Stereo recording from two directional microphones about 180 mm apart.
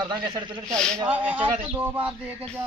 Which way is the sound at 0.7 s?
5° left (ahead or behind).